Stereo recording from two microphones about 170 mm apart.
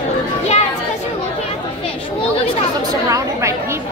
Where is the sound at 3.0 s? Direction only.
20° right (ahead or behind).